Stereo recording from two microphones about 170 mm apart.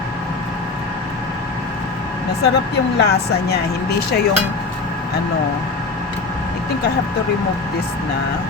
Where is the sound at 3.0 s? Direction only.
70° left (ahead or behind).